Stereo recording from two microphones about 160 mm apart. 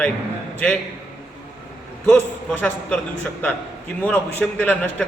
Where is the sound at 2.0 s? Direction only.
10° left (ahead or behind).